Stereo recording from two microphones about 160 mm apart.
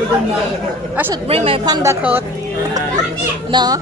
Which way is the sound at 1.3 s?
40° right (ahead or behind).